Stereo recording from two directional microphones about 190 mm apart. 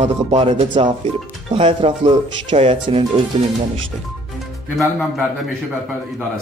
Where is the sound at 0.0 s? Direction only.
35° right (ahead or behind).